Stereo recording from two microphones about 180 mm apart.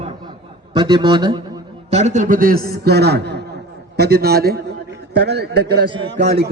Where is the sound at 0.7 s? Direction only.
25° right (ahead or behind).